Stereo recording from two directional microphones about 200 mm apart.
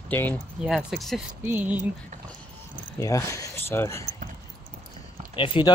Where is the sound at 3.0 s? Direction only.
15° left (ahead or behind).